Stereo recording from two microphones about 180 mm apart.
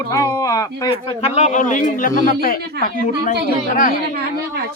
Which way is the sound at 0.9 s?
35° left (ahead or behind).